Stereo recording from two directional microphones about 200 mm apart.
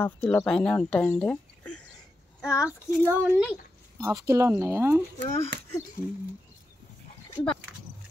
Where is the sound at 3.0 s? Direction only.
10° right (ahead or behind).